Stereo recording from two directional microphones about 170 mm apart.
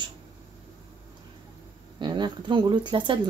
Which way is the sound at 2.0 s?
25° right (ahead or behind).